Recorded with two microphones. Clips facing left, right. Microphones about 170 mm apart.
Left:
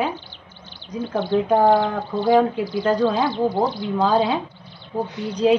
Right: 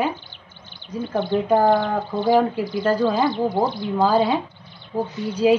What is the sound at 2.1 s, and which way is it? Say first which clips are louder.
Speech: left 1 dB; 15° right (ahead or behind).